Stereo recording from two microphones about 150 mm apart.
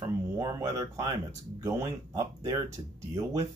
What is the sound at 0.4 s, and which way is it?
Speech, 20° right (ahead or behind).